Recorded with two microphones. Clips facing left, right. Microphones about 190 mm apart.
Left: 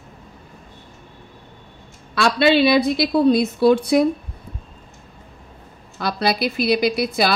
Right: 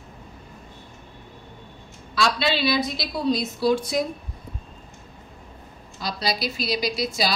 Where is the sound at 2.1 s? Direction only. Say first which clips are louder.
Left 8 dB; 60° left (ahead or behind).